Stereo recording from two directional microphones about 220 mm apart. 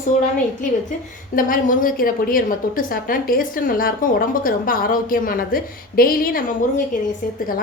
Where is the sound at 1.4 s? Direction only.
40° left (ahead or behind).